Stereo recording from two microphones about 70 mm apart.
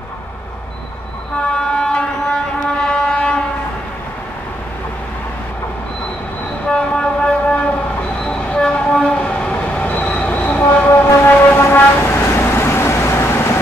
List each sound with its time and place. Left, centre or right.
1.4 s train: centre
6.7 s train: centre
11.1 s vehicle: left